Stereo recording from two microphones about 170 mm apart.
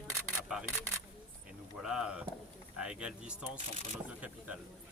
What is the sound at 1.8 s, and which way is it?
Speech, 5° right (ahead or behind).